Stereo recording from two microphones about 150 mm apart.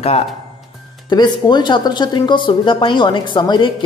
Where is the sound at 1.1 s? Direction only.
30° left (ahead or behind).